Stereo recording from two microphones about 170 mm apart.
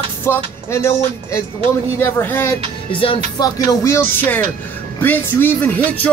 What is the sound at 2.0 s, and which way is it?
Music, 15° left (ahead or behind).